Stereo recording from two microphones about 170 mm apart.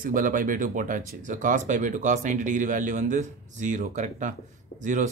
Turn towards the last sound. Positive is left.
turn(degrees=-45)  # may be behind; listen again after turning